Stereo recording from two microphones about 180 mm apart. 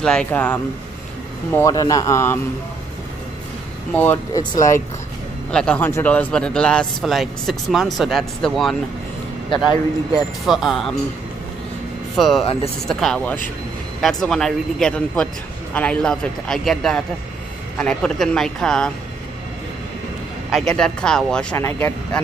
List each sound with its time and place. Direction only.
0.0 s speech: 5° left (ahead or behind)
3.9 s speech: 10° left (ahead or behind)
5.5 s speech: 5° left (ahead or behind)
10.1 s speech: centre (ahead or behind)
12.2 s speech: centre (ahead or behind)
20.5 s speech: 5° left (ahead or behind)